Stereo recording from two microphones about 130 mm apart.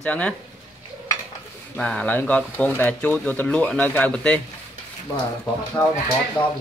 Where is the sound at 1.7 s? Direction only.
5° left (ahead or behind).